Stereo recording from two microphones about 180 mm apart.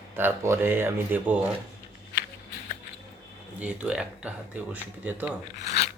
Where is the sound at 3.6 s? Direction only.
5° right (ahead or behind).